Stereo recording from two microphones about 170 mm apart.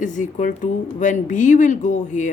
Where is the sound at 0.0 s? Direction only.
50° left (ahead or behind).